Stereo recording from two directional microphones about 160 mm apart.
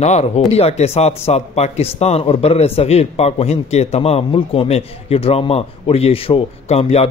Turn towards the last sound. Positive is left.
turn(degrees=40)  # may be behind; listen again after turning